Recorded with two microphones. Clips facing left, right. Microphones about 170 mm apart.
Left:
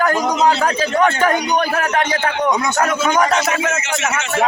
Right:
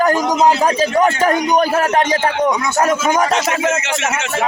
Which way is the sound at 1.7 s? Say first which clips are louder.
Right 4 dB; 25° right (ahead or behind).